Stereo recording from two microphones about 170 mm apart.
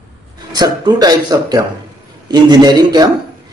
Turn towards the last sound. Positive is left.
turn(degrees=-25)  # may be behind; listen again after turning